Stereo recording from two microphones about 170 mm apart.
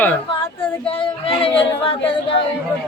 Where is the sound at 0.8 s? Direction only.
30° left (ahead or behind).